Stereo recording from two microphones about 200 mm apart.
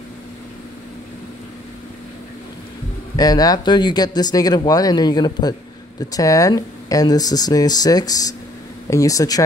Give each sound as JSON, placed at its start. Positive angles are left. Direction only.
{"t": 3.2, "sound": "speech", "side_deg": 20}